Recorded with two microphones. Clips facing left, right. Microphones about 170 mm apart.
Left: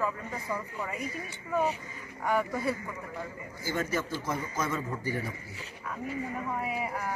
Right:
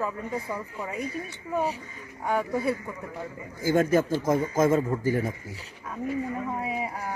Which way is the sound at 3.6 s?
50° right (ahead or behind).